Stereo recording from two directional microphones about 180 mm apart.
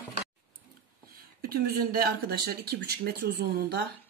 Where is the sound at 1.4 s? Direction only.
55° right (ahead or behind).